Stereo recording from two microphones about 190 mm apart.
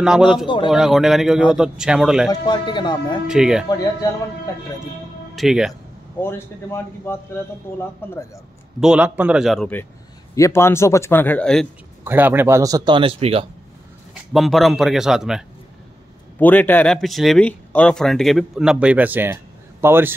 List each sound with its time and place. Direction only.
0.7 s speech: centre (ahead or behind)
2.2 s speech: 25° left (ahead or behind)
3.3 s speech: 5° right (ahead or behind)
3.6 s speech: 20° left (ahead or behind)
5.3 s speech: centre (ahead or behind)
6.2 s speech: 10° left (ahead or behind)
8.8 s speech: 5° right (ahead or behind)
12.0 s speech: 10° right (ahead or behind); by 13.5 s 30° right (ahead or behind)
14.3 s speech: centre (ahead or behind)
16.3 s speech: 10° left (ahead or behind); by 20.2 s 10° right (ahead or behind)